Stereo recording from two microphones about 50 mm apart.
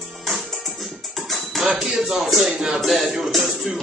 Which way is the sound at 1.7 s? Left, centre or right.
Centre.